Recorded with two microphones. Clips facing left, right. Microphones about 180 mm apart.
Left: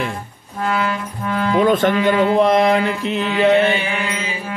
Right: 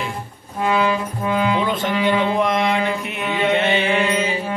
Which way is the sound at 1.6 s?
50° left (ahead or behind).